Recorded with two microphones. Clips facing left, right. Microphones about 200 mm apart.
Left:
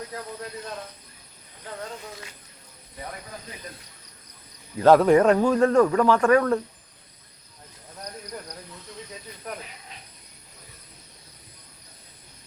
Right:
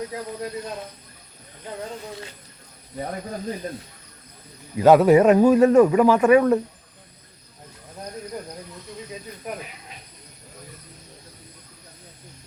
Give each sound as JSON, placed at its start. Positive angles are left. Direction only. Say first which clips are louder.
{"t": 3.0, "sound": "speech", "louder": "right 9 dB", "side_deg": -40}
{"t": 4.8, "sound": "speech", "louder": "right 2 dB", "side_deg": -5}